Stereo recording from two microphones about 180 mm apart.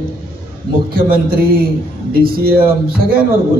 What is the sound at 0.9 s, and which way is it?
A man's voice, 55° right (ahead or behind).